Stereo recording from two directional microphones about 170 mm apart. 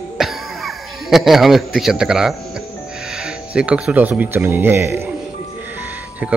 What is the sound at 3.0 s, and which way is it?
Speech, centre (ahead or behind).